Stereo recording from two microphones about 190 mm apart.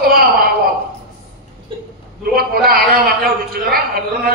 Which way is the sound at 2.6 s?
50° right (ahead or behind).